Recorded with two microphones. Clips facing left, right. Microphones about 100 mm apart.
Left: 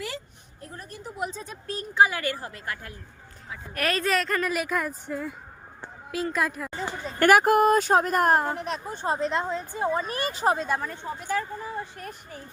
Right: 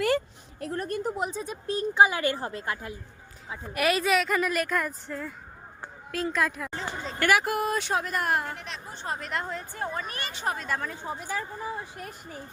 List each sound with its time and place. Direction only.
0.6 s speech: 65° right (ahead or behind)
1.2 s a woman's voice: 15° right (ahead or behind)
3.8 s speech: 10° right (ahead or behind)
6.7 s a sound: 10° left (ahead or behind)
7.2 s speech: 45° left (ahead or behind)
9.0 s a woman's voice: 25° left (ahead or behind)
10.0 s speech: 35° left (ahead or behind)
10.5 s a woman's voice: 25° left (ahead or behind)
10.8 s speech: centre (ahead or behind)
11.0 s speech: 10° right (ahead or behind)